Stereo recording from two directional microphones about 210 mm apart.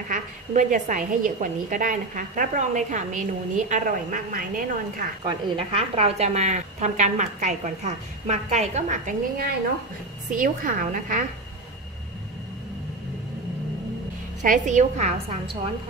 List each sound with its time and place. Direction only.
0.1 s a woman's voice: 35° right (ahead or behind)
5.6 s a woman's voice: 25° right (ahead or behind)
14.4 s a woman's voice: 35° right (ahead or behind)